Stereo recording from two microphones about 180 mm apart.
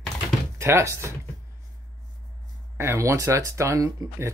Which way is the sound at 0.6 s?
15° right (ahead or behind).